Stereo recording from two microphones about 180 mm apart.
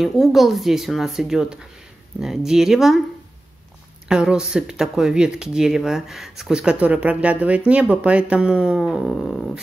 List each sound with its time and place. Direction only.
0.0 s speech: centre (ahead or behind)
4.1 s speech: 5° right (ahead or behind)